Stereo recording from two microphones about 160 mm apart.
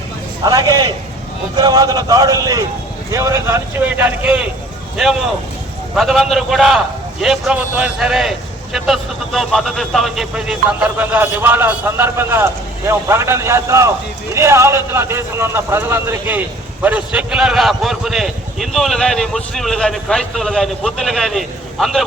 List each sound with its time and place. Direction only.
0.4 s a man's voice: 25° right (ahead or behind); by 22.0 s centre (ahead or behind)